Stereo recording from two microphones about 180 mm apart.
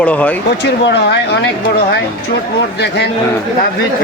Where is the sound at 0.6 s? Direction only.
70° left (ahead or behind).